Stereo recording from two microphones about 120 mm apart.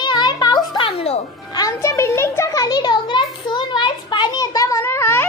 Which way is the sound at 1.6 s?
25° left (ahead or behind).